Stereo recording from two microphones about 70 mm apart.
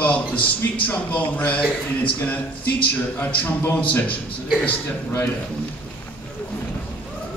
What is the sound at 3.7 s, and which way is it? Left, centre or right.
Speech, left.